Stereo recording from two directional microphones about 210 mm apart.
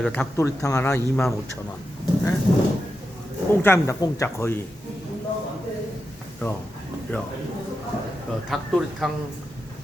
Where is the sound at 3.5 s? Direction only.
10° left (ahead or behind).